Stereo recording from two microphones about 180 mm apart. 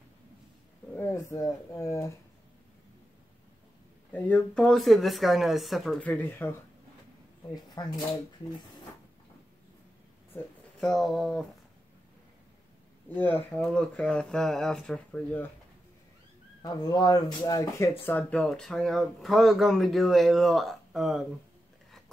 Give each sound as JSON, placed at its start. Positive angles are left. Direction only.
{"t": 0.9, "sound": "speech", "side_deg": 15}
{"t": 4.1, "sound": "speech", "side_deg": 5}
{"t": 7.5, "sound": "speech", "side_deg": 20}
{"t": 10.3, "sound": "speech", "side_deg": 5}
{"t": 13.1, "sound": "speech", "side_deg": 10}
{"t": 16.6, "sound": "speech", "side_deg": 20}